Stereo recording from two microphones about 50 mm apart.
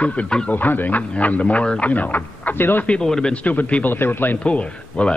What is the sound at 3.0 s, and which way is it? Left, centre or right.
Speech, centre.